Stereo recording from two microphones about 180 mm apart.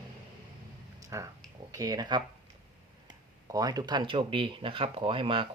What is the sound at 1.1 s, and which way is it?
Speech, 15° right (ahead or behind).